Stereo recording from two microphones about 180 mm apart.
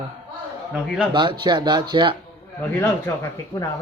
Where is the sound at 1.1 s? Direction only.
25° right (ahead or behind).